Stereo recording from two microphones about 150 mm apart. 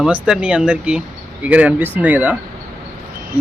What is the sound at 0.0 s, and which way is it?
Speech, 5° right (ahead or behind).